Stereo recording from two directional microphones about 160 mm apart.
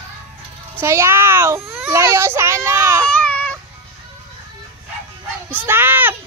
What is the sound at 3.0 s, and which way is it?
Baby cry, 10° left (ahead or behind).